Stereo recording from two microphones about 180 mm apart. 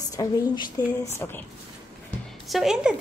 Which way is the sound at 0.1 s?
20° left (ahead or behind).